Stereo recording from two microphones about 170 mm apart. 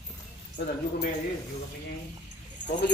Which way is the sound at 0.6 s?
75° left (ahead or behind).